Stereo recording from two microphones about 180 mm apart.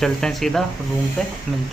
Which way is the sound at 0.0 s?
Centre (ahead or behind).